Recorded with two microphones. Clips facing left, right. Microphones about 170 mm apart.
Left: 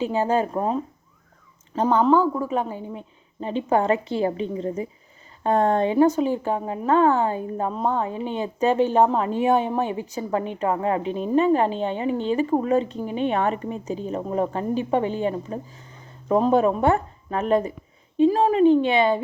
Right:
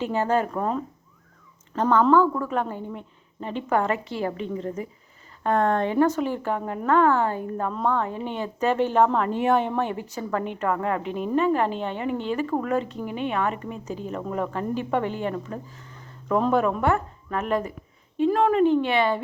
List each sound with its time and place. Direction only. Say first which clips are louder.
0.0 s speech: left 2 dB; 15° left (ahead or behind)
1.7 s speech: even; 15° left (ahead or behind)
18.6 s speech: left 3 dB; 20° left (ahead or behind)